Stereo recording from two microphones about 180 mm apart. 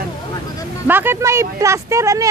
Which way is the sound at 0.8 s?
10° right (ahead or behind).